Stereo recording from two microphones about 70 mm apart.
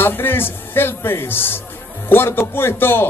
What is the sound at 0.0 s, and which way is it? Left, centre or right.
A man's voice, left.